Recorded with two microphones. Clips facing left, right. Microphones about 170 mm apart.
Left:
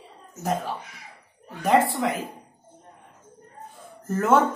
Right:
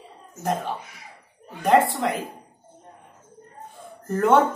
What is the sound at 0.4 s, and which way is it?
Speech, centre (ahead or behind).